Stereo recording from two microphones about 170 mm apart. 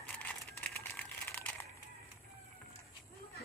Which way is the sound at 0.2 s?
10° left (ahead or behind).